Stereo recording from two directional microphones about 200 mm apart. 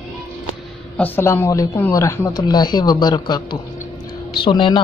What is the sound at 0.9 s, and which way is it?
Speech, 10° left (ahead or behind).